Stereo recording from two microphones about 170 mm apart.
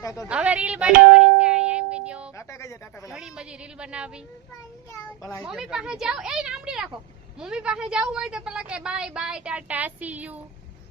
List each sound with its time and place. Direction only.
0.0 s a woman's voice: 20° left (ahead or behind)
0.3 s music: 5° right (ahead or behind)
2.3 s a sound: 15° left (ahead or behind)
3.1 s a woman's voice: 5° right (ahead or behind)
4.9 s a child's voice: 15° left (ahead or behind)
5.4 s a woman's voice: centre (ahead or behind)